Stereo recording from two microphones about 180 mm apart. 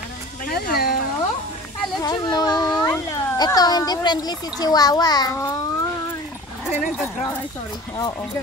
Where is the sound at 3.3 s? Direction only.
20° left (ahead or behind).